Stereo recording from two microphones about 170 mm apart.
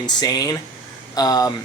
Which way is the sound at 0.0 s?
25° left (ahead or behind).